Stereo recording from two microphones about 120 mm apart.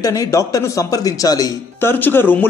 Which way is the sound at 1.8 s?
20° left (ahead or behind).